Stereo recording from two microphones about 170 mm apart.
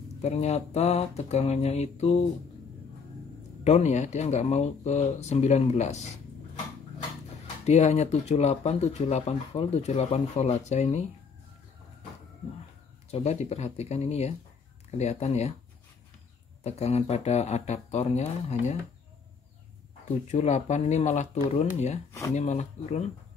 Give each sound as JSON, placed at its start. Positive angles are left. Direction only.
{"t": 0.2, "sound": "speech", "side_deg": 40}
{"t": 3.6, "sound": "speech", "side_deg": 40}
{"t": 7.6, "sound": "speech", "side_deg": 40}
{"t": 13.1, "sound": "speech", "side_deg": 40}
{"t": 16.6, "sound": "speech", "side_deg": 40}
{"t": 20.2, "sound": "speech", "side_deg": 45}